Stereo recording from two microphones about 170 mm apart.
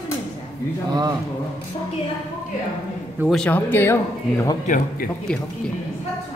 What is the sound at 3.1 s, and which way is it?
Speech, centre (ahead or behind).